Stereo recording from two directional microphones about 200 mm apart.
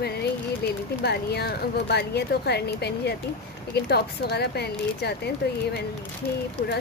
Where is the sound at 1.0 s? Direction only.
55° left (ahead or behind).